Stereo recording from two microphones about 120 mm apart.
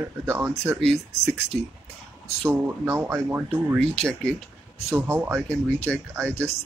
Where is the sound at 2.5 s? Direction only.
20° right (ahead or behind).